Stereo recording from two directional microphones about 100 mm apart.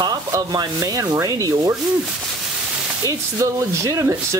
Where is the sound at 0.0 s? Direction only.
40° right (ahead or behind).